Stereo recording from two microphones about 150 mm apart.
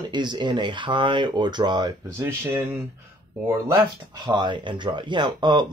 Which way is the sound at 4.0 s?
30° right (ahead or behind).